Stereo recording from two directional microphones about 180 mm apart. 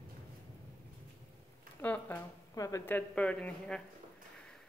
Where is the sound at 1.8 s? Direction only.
10° left (ahead or behind).